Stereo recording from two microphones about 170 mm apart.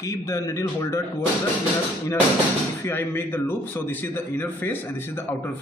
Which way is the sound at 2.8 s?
15° left (ahead or behind).